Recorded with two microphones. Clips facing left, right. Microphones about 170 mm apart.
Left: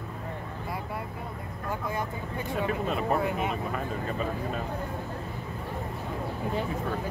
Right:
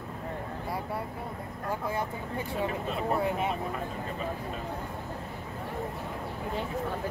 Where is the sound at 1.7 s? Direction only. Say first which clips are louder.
Even; 30° right (ahead or behind).